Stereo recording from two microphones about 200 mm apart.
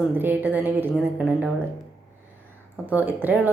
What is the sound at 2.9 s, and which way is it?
Speech, 5° right (ahead or behind).